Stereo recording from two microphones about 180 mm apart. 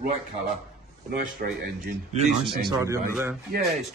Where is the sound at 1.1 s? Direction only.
50° right (ahead or behind).